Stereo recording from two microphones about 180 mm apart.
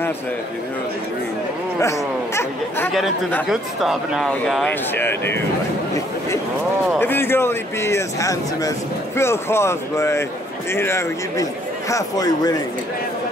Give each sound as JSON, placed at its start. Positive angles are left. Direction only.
{"t": 1.8, "sound": "speech", "side_deg": 15}
{"t": 3.4, "sound": "speech", "side_deg": 0}
{"t": 7.0, "sound": "a man's voice", "side_deg": 10}